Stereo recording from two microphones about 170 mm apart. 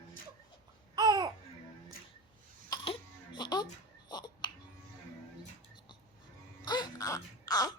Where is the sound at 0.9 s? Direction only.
25° right (ahead or behind).